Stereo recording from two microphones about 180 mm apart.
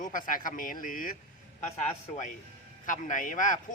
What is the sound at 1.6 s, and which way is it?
A man's voice, 40° left (ahead or behind).